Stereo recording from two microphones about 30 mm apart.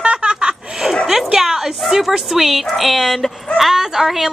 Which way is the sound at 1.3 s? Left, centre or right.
Centre.